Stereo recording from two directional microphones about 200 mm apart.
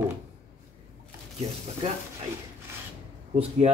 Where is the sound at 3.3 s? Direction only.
30° right (ahead or behind).